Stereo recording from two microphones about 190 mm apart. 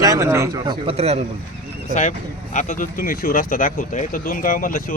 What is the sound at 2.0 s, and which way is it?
Speech, 35° left (ahead or behind).